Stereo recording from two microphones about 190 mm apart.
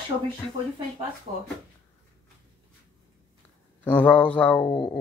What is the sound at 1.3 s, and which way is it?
Speech, 30° right (ahead or behind).